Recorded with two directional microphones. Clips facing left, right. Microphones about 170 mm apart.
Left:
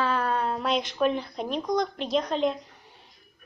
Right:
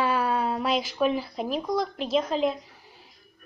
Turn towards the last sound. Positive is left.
turn(degrees=0)  # may be behind; listen again after turning